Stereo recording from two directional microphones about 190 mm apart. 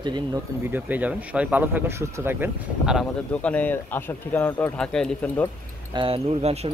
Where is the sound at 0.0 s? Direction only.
25° right (ahead or behind).